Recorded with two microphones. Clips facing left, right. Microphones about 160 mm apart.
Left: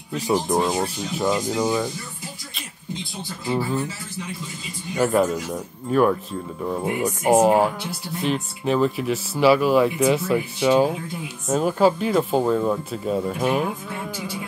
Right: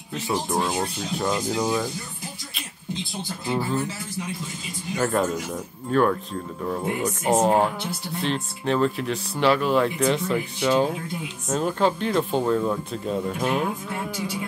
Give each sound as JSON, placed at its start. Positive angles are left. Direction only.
{"t": 0.3, "sound": "speech", "side_deg": 20}
{"t": 0.8, "sound": "speech", "side_deg": 5}
{"t": 4.9, "sound": "speech", "side_deg": 5}